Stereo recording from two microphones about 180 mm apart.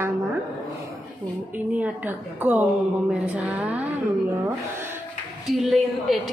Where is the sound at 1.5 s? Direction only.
10° right (ahead or behind).